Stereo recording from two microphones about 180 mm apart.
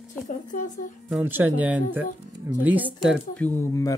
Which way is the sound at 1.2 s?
10° right (ahead or behind).